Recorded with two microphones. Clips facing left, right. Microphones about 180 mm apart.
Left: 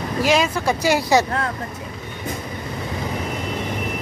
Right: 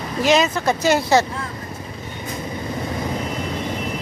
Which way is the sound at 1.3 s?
70° left (ahead or behind).